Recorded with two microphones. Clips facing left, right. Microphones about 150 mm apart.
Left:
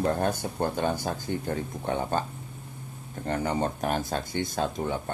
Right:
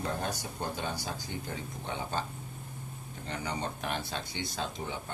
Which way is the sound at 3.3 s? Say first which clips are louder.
Left 9 dB; 50° left (ahead or behind).